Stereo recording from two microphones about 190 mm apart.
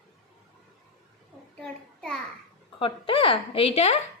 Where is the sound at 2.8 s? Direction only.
30° left (ahead or behind).